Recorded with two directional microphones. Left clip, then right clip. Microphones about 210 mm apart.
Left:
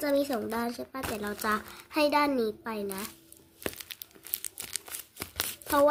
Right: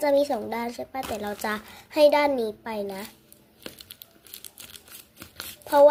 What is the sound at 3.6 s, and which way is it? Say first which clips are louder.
Crumpling: left 4 dB; 30° left (ahead or behind).